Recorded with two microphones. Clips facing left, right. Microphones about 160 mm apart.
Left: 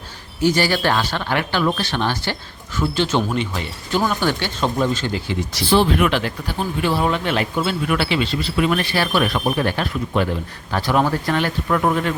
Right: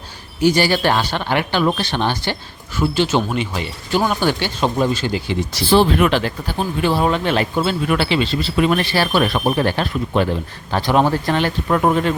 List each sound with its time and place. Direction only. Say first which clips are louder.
0.4 s speech: right 2 dB; 15° right (ahead or behind)
2.7 s speech: right 2 dB; 10° right (ahead or behind)
5.6 s speech: right 2 dB; 35° right (ahead or behind)